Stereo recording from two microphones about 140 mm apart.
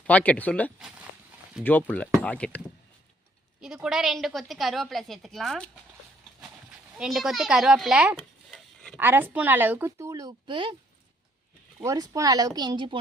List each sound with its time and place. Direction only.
0.0 s speech: 10° left (ahead or behind)
3.6 s a woman's voice: 5° right (ahead or behind)
6.9 s a woman's voice: centre (ahead or behind)
8.4 s a sound: 5° left (ahead or behind)
9.0 s a woman's voice: 15° right (ahead or behind); by 10.8 s 35° right (ahead or behind)
11.8 s speech: 20° right (ahead or behind)